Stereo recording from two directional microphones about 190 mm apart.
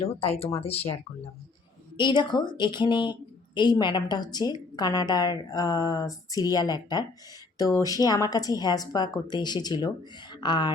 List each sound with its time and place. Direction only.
0.0 s speech: 30° left (ahead or behind)
2.0 s a woman's voice: 25° left (ahead or behind)